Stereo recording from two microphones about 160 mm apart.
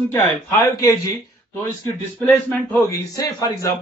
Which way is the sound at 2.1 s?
10° left (ahead or behind).